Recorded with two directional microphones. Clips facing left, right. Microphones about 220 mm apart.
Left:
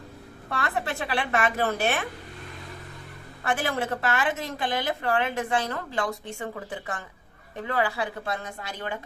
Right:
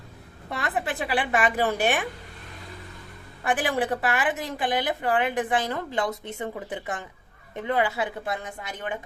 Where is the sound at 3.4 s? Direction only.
15° right (ahead or behind).